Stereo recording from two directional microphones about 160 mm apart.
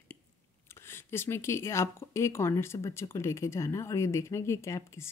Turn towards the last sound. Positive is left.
turn(degrees=15)  # may be behind; listen again after turning